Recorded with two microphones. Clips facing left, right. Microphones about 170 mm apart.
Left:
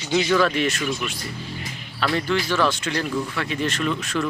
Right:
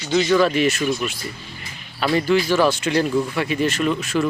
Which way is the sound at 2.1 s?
10° right (ahead or behind).